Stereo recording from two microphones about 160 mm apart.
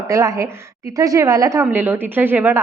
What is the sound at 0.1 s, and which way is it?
A woman's voice, 20° right (ahead or behind).